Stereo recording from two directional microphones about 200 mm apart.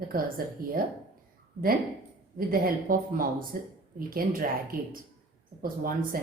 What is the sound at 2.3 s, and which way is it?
A woman's voice, 45° right (ahead or behind).